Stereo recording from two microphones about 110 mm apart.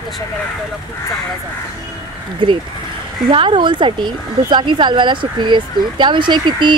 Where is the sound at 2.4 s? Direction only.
45° right (ahead or behind).